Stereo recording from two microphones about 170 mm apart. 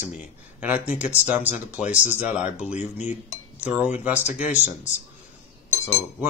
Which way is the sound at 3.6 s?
10° right (ahead or behind).